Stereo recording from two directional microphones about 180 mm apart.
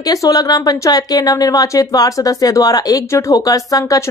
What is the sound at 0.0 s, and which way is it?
Speech, 20° left (ahead or behind).